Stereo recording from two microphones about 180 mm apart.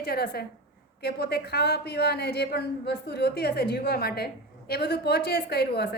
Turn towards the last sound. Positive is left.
turn(degrees=60)  # may be behind; listen again after turning